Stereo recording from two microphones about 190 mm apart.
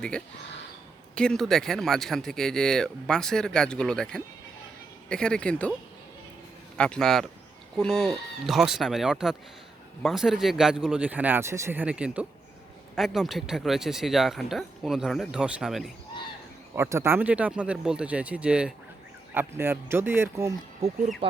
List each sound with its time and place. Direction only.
1.1 s speech: 5° left (ahead or behind)
6.7 s speech: 5° left (ahead or behind); by 20.5 s 10° right (ahead or behind)
20.8 s speech: 30° right (ahead or behind)